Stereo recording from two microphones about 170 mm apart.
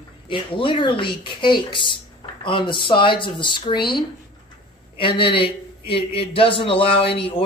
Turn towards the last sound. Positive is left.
turn(degrees=35)  # may be behind; listen again after turning